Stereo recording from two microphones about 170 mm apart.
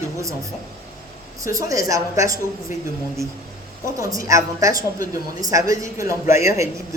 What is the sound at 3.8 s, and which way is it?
A woman's voice, 20° right (ahead or behind).